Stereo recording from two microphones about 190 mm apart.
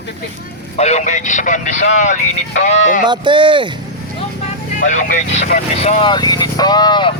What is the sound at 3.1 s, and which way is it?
Speech, 25° right (ahead or behind).